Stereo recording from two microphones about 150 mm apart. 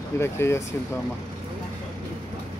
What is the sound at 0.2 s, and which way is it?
Speech, 15° left (ahead or behind).